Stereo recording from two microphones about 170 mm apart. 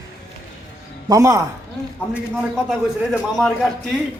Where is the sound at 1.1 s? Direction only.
20° right (ahead or behind).